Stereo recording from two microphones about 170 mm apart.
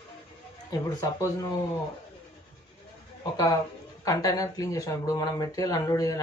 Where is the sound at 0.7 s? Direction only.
20° left (ahead or behind).